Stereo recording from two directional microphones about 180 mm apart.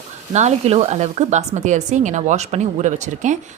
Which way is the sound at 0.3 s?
40° right (ahead or behind).